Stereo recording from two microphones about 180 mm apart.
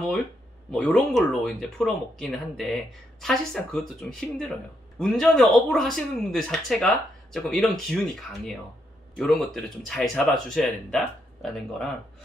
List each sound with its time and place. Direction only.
0.7 s speech: 5° left (ahead or behind)
9.2 s speech: centre (ahead or behind)